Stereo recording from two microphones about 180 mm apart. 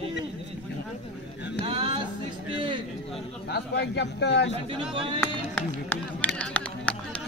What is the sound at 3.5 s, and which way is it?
A man's voice, 65° left (ahead or behind).